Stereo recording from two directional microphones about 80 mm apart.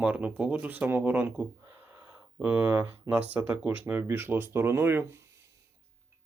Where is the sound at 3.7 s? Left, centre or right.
Right.